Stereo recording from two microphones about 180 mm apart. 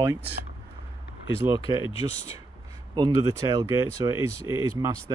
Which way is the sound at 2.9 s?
20° right (ahead or behind).